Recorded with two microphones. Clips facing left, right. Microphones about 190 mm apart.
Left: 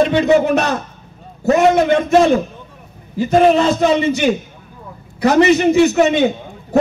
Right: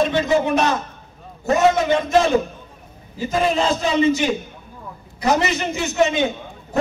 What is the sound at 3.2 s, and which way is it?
A man's voice, 70° left (ahead or behind).